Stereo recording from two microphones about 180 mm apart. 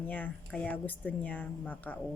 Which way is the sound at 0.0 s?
10° left (ahead or behind).